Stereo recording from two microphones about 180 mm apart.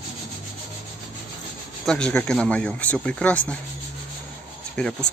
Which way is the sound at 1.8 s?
5° left (ahead or behind).